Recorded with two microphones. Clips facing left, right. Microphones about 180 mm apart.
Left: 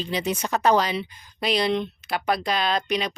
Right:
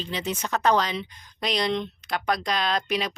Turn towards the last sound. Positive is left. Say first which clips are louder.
# left 2 dB
turn(degrees=0)  # may be behind; listen again after turning